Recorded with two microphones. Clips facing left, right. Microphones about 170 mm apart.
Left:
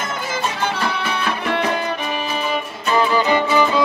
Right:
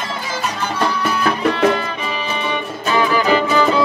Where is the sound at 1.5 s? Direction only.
55° left (ahead or behind).